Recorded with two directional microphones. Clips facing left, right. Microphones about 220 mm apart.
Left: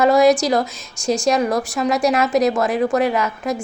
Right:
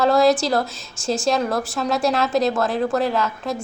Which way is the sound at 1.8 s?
15° left (ahead or behind).